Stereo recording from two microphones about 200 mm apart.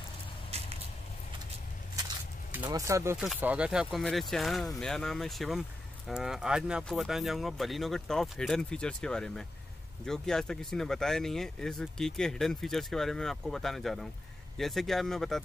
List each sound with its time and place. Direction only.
0.5 s vehicle: 30° right (ahead or behind)
2.6 s speech: 15° right (ahead or behind); by 15.4 s centre (ahead or behind)